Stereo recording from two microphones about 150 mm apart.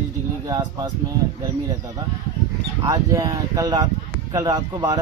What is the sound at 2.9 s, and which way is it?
Speech, 25° right (ahead or behind).